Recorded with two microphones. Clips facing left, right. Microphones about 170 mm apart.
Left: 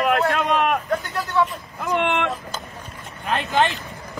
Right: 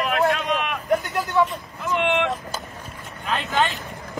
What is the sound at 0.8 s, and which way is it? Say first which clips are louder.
Speech: right 3 dB; 15° right (ahead or behind).